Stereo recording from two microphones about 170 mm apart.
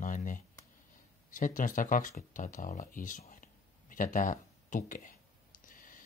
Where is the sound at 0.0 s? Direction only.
50° left (ahead or behind).